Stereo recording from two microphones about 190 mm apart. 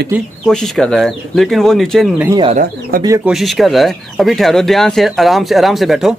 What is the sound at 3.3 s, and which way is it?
Speech, centre (ahead or behind).